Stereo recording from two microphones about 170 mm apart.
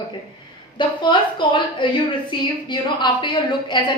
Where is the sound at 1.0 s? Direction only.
30° left (ahead or behind).